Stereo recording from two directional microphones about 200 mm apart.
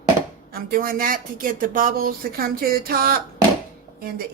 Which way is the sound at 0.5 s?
45° right (ahead or behind).